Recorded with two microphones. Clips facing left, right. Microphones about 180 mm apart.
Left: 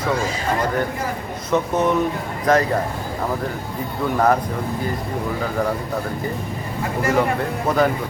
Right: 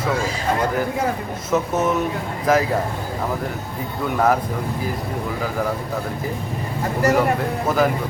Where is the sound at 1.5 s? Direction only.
5° right (ahead or behind).